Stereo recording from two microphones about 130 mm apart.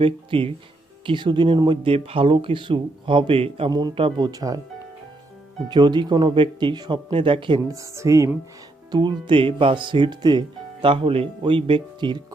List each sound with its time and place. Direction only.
0.0 s speech: 45° right (ahead or behind)
3.7 s speech: 30° right (ahead or behind)
3.9 s speech: 45° right (ahead or behind)
4.3 s speech: 30° right (ahead or behind)
5.6 s speech: 35° right (ahead or behind)
7.7 s speech: 25° right (ahead or behind)
8.9 s speech: 35° right (ahead or behind)